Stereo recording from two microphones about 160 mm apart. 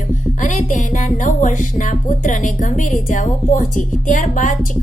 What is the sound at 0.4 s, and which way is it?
Speech, 50° left (ahead or behind).